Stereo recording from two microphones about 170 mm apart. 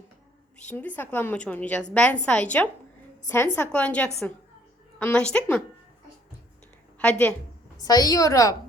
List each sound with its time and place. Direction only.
0.7 s a woman's voice: 10° left (ahead or behind)
7.0 s a woman's voice: 10° left (ahead or behind)
7.8 s a woman's voice: 20° left (ahead or behind)